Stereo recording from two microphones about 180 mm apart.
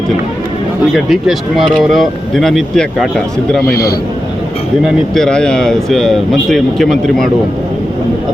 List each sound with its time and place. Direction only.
0.9 s speech: centre (ahead or behind)
3.6 s a man's voice: 60° left (ahead or behind)
5.1 s speech: 5° left (ahead or behind)